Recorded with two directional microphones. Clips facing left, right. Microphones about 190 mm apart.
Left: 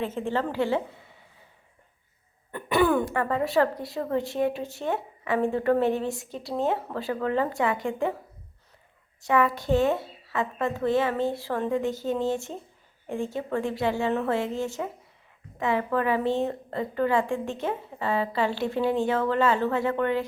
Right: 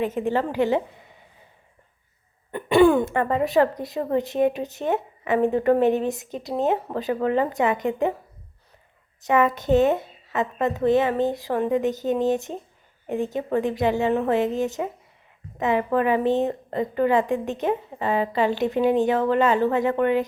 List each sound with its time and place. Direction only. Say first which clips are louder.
0.0 s a woman's voice: right 4 dB; 15° right (ahead or behind)
2.5 s speech: right 6 dB; 25° right (ahead or behind)
9.2 s speech: right 3 dB; 20° right (ahead or behind)